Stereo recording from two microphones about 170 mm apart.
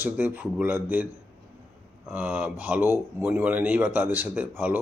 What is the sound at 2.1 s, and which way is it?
Speech, 10° right (ahead or behind).